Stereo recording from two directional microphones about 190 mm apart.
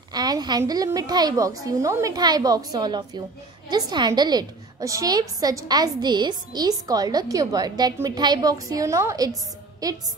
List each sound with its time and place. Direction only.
0.1 s a woman's voice: 20° right (ahead or behind)